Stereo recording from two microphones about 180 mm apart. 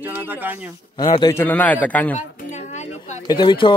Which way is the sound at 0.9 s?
25° left (ahead or behind).